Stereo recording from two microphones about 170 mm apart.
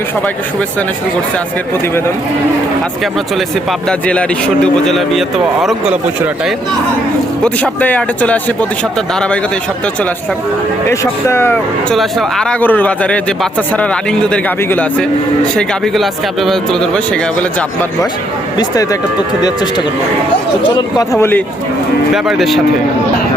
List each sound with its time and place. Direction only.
3.0 s speech: centre (ahead or behind)
7.4 s speech: 10° left (ahead or behind)
10.8 s speech: 15° left (ahead or behind)
18.5 s speech: 20° left (ahead or behind)
22.1 s speech: centre (ahead or behind)